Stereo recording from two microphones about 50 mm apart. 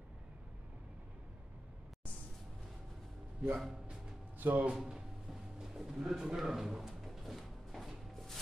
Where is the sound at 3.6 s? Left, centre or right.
Centre.